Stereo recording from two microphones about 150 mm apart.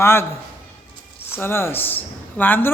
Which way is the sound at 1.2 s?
15° left (ahead or behind).